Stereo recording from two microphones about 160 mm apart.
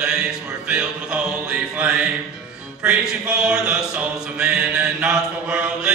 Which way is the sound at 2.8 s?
5° right (ahead or behind).